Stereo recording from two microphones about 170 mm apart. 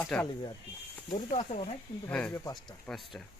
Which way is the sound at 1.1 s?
35° left (ahead or behind).